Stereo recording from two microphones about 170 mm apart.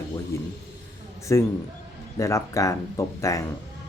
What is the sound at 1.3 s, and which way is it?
Speech, 15° left (ahead or behind).